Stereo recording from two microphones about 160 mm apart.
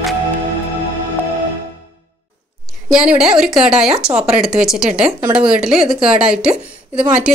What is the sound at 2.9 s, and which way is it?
A woman's voice, 5° right (ahead or behind).